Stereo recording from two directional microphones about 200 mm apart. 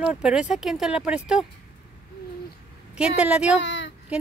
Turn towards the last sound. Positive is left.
turn(degrees=60)  # may be behind; listen again after turning